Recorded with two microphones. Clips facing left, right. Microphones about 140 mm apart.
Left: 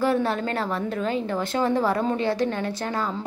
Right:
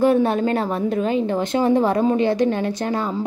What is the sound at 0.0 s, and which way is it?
A woman's voice, 20° right (ahead or behind).